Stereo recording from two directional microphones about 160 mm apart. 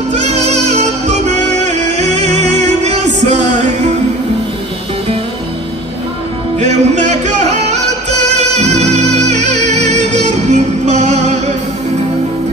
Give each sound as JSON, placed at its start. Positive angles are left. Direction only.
{"t": 0.1, "sound": "music", "side_deg": -45}
{"t": 6.6, "sound": "music", "side_deg": -45}